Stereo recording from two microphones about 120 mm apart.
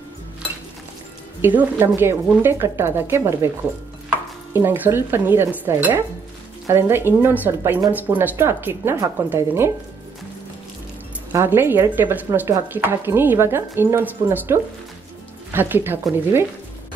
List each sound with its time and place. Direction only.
1.4 s speech: 15° right (ahead or behind)
4.6 s speech: 15° right (ahead or behind)
11.3 s speech: 20° right (ahead or behind)